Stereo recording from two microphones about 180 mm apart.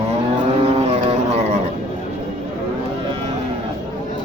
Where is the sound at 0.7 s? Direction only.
35° right (ahead or behind).